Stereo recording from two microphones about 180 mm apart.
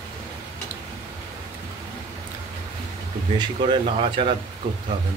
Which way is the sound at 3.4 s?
25° right (ahead or behind).